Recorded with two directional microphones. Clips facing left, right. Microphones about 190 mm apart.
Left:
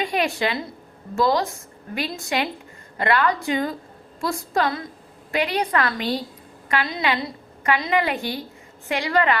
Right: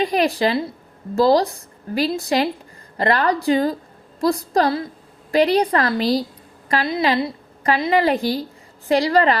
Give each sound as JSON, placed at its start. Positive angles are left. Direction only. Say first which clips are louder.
{"t": 0.0, "sound": "a woman's voice", "louder": "right 5 dB", "side_deg": -35}